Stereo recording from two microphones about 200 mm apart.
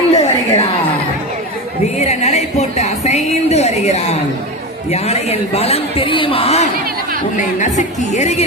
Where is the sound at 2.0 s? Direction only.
35° left (ahead or behind).